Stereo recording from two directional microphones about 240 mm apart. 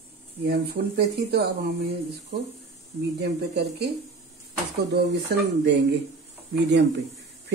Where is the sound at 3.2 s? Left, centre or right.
Right.